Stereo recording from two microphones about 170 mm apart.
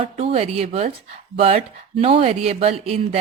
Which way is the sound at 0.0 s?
35° right (ahead or behind).